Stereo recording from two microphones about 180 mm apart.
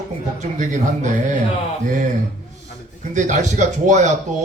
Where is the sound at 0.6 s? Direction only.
45° right (ahead or behind).